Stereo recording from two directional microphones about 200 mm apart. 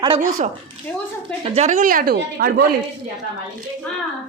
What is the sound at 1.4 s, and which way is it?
A woman's voice, 30° right (ahead or behind).